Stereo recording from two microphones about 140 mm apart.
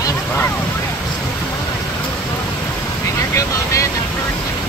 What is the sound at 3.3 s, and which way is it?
Speech, 20° left (ahead or behind).